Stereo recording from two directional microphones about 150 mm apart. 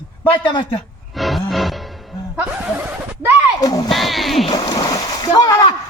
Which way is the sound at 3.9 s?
Centre (ahead or behind).